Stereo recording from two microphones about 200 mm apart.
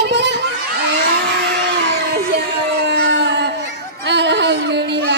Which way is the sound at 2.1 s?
55° right (ahead or behind).